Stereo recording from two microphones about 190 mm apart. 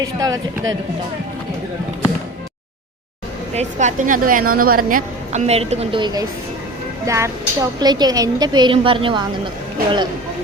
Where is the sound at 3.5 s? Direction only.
35° right (ahead or behind).